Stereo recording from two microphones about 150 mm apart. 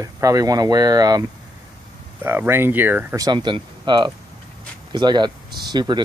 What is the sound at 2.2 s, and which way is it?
Speech, 15° right (ahead or behind).